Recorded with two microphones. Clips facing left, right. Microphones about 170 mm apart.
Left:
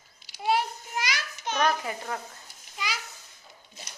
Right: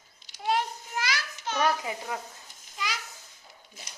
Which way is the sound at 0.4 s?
10° left (ahead or behind).